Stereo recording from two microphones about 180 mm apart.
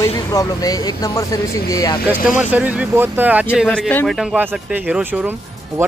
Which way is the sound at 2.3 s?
5° right (ahead or behind).